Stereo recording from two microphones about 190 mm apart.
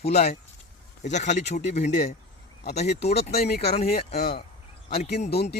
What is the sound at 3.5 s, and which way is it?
Speech, 55° left (ahead or behind).